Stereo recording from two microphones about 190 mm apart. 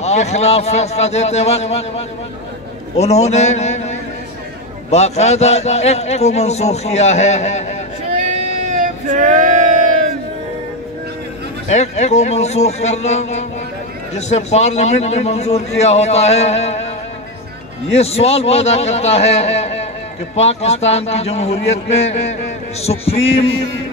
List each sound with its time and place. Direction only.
0.0 s a man's voice: 35° left (ahead or behind)
4.9 s a man's voice: 35° left (ahead or behind)
8.2 s a sound: 40° right (ahead or behind)
11.7 s a man's voice: 35° left (ahead or behind)